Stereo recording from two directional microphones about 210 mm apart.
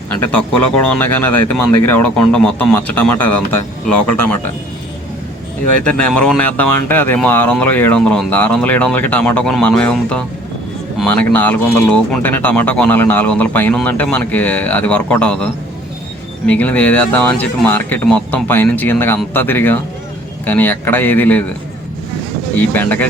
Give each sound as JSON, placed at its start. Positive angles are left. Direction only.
{"t": 0.2, "sound": "speech", "side_deg": 5}
{"t": 5.8, "sound": "speech", "side_deg": 5}
{"t": 16.5, "sound": "speech", "side_deg": 10}
{"t": 22.5, "sound": "speech", "side_deg": 10}